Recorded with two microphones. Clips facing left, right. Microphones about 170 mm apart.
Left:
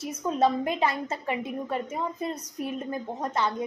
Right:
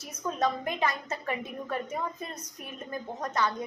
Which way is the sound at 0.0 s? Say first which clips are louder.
Left 5 dB; 25° left (ahead or behind).